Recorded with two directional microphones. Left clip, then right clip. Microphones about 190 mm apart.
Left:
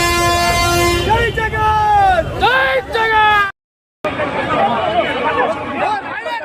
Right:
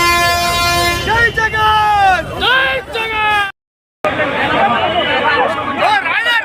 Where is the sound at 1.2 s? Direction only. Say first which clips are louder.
Right 4 dB; 30° left (ahead or behind).